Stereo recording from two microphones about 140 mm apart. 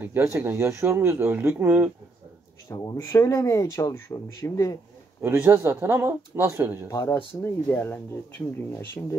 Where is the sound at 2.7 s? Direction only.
25° left (ahead or behind).